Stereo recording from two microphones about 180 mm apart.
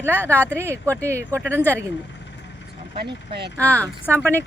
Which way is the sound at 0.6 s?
15° right (ahead or behind).